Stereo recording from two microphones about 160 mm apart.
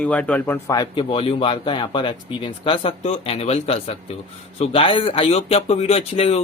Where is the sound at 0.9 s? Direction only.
35° left (ahead or behind).